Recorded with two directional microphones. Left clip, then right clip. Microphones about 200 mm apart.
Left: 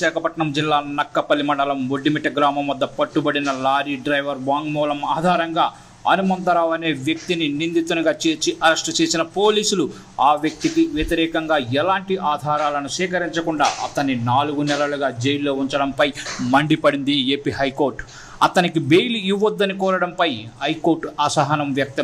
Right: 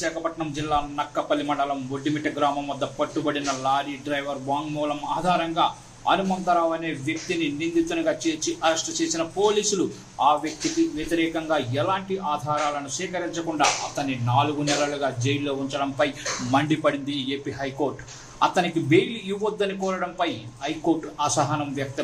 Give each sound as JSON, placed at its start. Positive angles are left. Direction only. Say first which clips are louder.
{"t": 0.0, "sound": "a man's voice", "louder": "left 7 dB", "side_deg": 35}